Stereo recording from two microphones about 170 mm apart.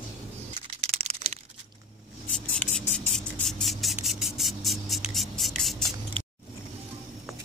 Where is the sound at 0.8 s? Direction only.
35° right (ahead or behind).